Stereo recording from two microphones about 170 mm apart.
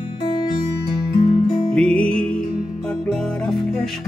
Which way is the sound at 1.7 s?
5° left (ahead or behind).